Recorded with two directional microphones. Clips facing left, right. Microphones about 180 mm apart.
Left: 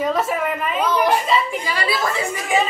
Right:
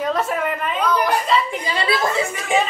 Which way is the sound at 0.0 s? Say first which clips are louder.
Left 1 dB; 5° left (ahead or behind).